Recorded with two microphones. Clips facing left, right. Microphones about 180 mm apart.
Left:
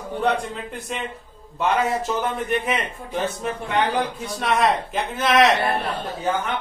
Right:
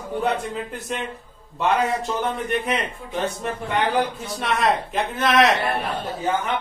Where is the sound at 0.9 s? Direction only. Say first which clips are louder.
Right 1 dB; centre (ahead or behind).